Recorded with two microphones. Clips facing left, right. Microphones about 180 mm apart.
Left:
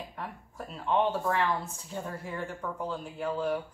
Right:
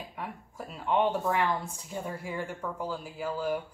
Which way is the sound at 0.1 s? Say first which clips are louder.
Right 1 dB; 10° right (ahead or behind).